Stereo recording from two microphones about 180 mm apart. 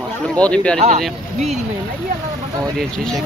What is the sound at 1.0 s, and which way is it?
Speech, centre (ahead or behind).